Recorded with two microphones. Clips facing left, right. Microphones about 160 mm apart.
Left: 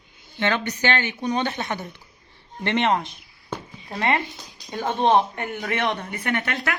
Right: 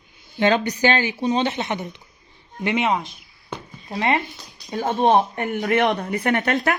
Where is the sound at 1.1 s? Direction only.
25° right (ahead or behind).